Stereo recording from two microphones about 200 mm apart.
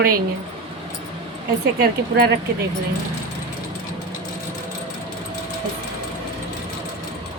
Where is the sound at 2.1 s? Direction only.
55° right (ahead or behind).